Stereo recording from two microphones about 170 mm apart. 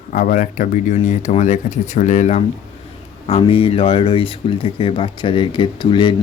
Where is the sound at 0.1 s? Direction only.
50° left (ahead or behind).